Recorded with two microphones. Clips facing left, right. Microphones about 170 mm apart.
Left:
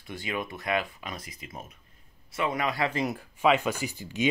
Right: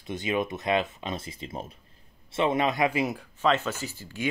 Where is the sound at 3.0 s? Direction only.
Centre (ahead or behind).